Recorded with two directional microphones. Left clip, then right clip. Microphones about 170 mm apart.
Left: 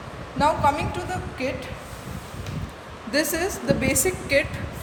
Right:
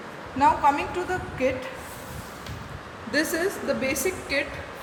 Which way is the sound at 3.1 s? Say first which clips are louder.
Left 1 dB; 50° left (ahead or behind).